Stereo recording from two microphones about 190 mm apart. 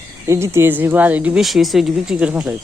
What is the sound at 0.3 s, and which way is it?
Speech, 15° right (ahead or behind).